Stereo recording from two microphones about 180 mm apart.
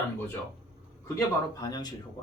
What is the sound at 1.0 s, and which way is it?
Speech, 15° left (ahead or behind).